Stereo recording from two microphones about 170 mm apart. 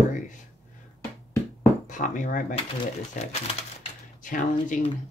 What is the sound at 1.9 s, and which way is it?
Speech, 50° left (ahead or behind).